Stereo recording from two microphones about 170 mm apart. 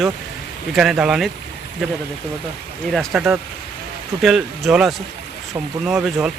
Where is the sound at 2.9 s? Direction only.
5° right (ahead or behind).